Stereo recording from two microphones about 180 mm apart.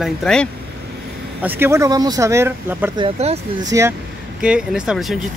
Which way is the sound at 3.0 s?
35° right (ahead or behind).